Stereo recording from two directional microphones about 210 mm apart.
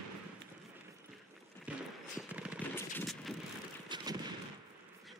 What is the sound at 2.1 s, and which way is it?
Machine gun, 5° right (ahead or behind).